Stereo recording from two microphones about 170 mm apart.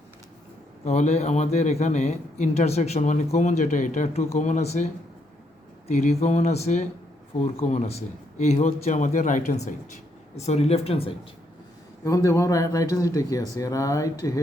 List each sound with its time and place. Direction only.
0.9 s a man's voice: 40° left (ahead or behind)
5.9 s a man's voice: 40° left (ahead or behind)
12.0 s speech: 15° left (ahead or behind)